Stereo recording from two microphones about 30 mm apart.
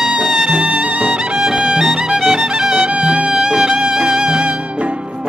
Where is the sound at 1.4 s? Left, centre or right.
Right.